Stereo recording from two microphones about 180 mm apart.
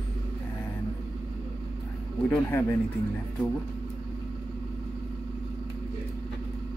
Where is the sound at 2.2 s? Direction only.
10° left (ahead or behind).